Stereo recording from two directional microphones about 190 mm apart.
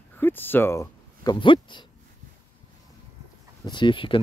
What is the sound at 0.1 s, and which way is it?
Speech, 10° left (ahead or behind).